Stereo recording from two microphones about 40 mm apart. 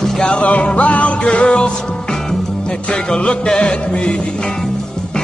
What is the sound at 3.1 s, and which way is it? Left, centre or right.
Music, left.